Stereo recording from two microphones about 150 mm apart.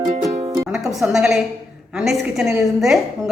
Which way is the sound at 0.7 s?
5° right (ahead or behind).